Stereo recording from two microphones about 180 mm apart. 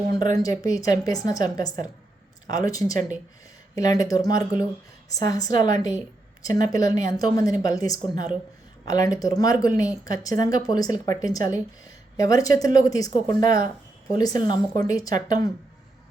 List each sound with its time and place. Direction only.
0.4 s speech: 20° left (ahead or behind)